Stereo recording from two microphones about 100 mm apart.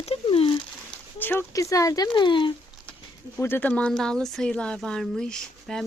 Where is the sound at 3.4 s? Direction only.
20° left (ahead or behind).